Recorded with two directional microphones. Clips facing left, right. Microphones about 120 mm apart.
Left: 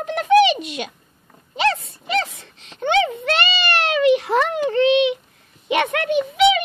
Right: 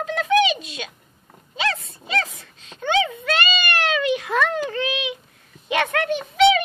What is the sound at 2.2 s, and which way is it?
A child's voice, 30° left (ahead or behind).